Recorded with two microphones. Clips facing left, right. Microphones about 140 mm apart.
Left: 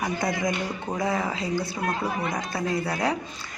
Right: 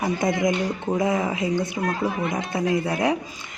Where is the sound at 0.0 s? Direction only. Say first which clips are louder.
Right 4 dB; 20° right (ahead or behind).